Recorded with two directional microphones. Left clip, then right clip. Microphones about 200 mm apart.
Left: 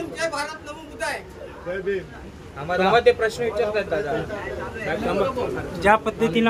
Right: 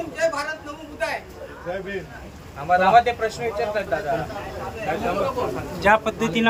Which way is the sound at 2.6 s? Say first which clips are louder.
Right 2 dB; 60° left (ahead or behind).